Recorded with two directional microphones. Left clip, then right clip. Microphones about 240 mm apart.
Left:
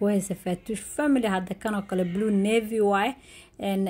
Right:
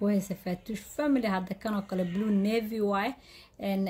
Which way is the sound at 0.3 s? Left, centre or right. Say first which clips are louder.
Left 6 dB; centre.